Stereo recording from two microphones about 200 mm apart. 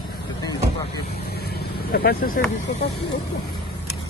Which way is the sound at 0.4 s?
20° left (ahead or behind).